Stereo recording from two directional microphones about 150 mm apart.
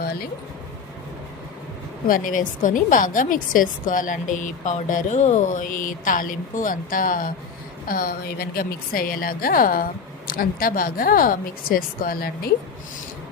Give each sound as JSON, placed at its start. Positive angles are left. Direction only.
{"t": 0.0, "sound": "speech", "side_deg": 90}
{"t": 2.0, "sound": "a woman's voice", "side_deg": 65}
{"t": 7.9, "sound": "a woman's voice", "side_deg": 90}